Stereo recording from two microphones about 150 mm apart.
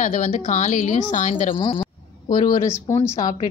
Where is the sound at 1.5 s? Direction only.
35° left (ahead or behind).